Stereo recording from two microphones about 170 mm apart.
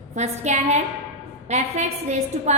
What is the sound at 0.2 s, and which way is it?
A woman's voice, 45° right (ahead or behind).